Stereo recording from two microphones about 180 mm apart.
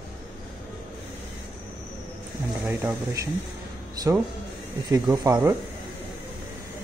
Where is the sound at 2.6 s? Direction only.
10° right (ahead or behind).